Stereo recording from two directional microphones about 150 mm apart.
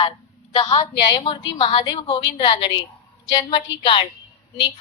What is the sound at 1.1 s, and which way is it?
A woman's voice, 30° left (ahead or behind).